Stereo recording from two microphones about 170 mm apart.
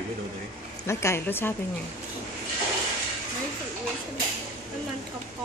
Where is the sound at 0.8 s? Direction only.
15° left (ahead or behind).